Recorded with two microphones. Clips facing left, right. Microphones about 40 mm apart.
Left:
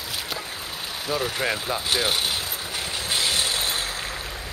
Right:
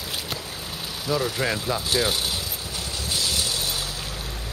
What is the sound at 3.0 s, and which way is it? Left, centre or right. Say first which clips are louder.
Vehicle: left 2 dB; left.